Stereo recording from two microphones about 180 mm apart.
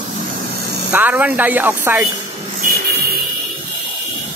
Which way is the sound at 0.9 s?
10° right (ahead or behind).